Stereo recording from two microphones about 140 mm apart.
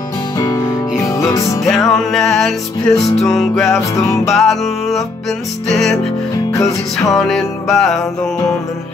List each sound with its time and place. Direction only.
1.0 s music: 25° left (ahead or behind)
1.6 s music: centre (ahead or behind)
3.9 s music: 20° left (ahead or behind)
4.3 s music: centre (ahead or behind)